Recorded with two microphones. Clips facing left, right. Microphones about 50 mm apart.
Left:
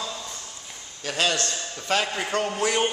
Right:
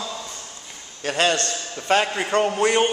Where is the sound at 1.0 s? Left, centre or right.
Right.